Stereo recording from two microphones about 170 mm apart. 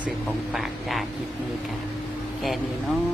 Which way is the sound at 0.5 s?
Centre (ahead or behind).